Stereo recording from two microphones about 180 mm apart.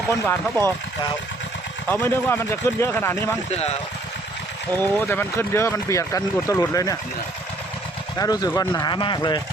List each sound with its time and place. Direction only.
0.3 s speech: 10° left (ahead or behind)
1.9 s speech: 10° left (ahead or behind)
4.8 s speech: 10° left (ahead or behind)
8.2 s speech: 20° left (ahead or behind)